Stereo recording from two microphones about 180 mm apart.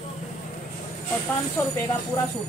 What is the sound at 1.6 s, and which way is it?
Speech, 15° left (ahead or behind).